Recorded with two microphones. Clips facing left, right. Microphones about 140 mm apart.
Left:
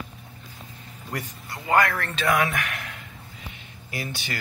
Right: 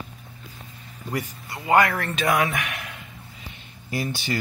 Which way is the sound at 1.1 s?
15° right (ahead or behind).